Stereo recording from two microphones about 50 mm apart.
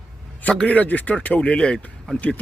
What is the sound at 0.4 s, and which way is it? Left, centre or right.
A man's voice, left.